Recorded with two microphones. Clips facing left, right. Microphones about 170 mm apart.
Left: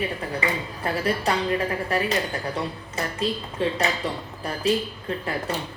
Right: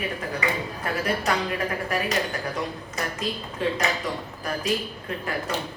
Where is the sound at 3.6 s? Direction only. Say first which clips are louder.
Left 1 dB; 30° left (ahead or behind).